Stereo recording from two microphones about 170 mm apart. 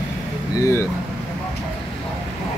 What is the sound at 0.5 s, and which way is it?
Speech, 15° left (ahead or behind).